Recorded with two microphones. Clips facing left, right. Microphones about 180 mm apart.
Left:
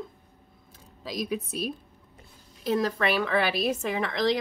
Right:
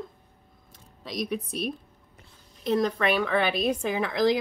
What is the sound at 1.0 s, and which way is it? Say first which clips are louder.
Speech: even; 5° left (ahead or behind).